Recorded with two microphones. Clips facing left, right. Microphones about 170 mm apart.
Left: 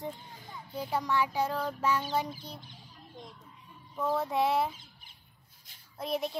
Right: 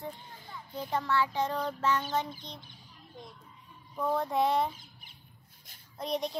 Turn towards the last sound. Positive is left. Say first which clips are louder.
# even
turn(degrees=5)  # may be behind; listen again after turning